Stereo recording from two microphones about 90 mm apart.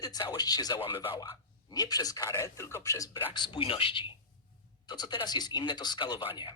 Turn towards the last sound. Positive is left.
turn(degrees=60)  # may be behind; listen again after turning